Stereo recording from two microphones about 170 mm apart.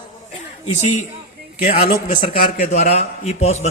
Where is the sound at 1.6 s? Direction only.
50° left (ahead or behind).